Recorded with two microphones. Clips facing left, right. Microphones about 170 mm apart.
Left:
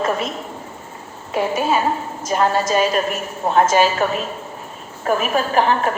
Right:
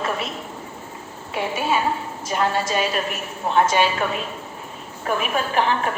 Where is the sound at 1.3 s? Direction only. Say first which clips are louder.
Left 4 dB; 40° left (ahead or behind).